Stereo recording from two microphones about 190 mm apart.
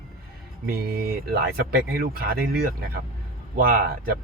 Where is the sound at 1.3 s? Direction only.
50° right (ahead or behind).